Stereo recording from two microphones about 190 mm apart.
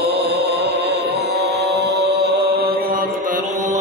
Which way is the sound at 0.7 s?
60° right (ahead or behind).